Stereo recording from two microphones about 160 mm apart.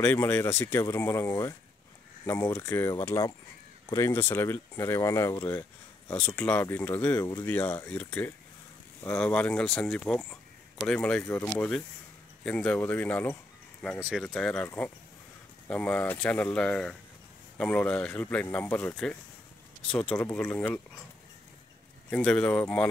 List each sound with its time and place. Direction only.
0.0 s speech: 10° left (ahead or behind)
22.1 s speech: 5° left (ahead or behind)